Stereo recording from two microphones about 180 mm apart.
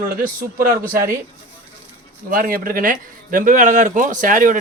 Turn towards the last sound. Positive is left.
turn(degrees=-45)  # may be behind; listen again after turning